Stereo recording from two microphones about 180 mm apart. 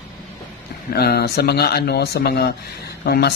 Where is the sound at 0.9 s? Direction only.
60° left (ahead or behind).